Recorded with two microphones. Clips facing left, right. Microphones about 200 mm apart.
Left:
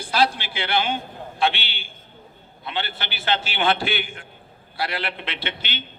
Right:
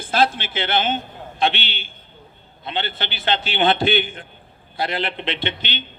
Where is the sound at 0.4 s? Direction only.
20° right (ahead or behind).